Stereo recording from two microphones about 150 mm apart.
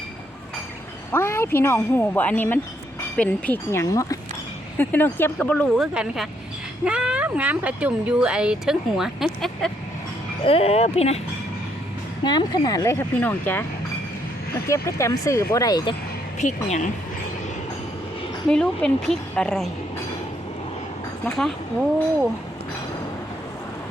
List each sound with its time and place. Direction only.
1.1 s speech: 15° left (ahead or behind)
10.4 s speech: 40° left (ahead or behind)
12.2 s a woman's voice: 30° left (ahead or behind); by 13.7 s 15° left (ahead or behind)
14.7 s a woman's voice: 20° left (ahead or behind)
16.4 s speech: 50° left (ahead or behind)
18.4 s a woman's voice: 5° left (ahead or behind)
21.2 s a woman's voice: 5° left (ahead or behind)